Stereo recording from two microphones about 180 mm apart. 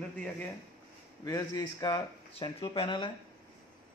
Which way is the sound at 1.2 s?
20° left (ahead or behind).